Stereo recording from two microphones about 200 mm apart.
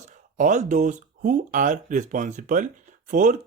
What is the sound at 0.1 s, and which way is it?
Speech, 40° right (ahead or behind).